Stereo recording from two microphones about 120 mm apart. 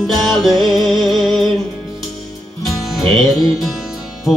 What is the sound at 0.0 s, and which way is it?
Music, 5° left (ahead or behind).